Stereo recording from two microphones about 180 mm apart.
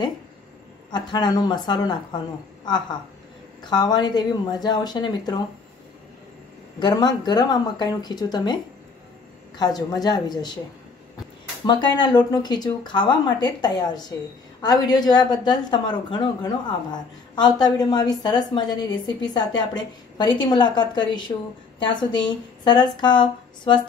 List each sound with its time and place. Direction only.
0.9 s a woman's voice: 25° left (ahead or behind)
6.8 s a woman's voice: 20° left (ahead or behind)
9.6 s a woman's voice: 20° left (ahead or behind)
11.6 s a woman's voice: 25° left (ahead or behind)